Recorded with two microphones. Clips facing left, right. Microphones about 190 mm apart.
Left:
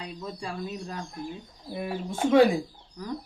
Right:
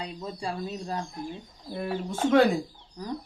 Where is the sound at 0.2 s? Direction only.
30° right (ahead or behind).